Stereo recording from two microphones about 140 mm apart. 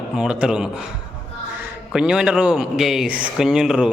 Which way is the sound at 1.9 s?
5° right (ahead or behind).